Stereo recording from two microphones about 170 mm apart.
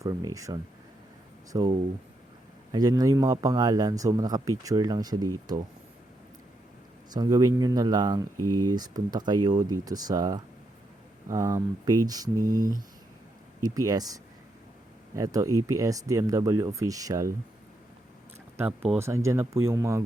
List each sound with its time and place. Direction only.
0.0 s speech: 20° right (ahead or behind)
2.7 s speech: 20° right (ahead or behind)
7.1 s speech: 20° right (ahead or behind)
12.4 s speech: 55° right (ahead or behind)
13.6 s speech: 20° right (ahead or behind)
18.5 s speech: 10° right (ahead or behind)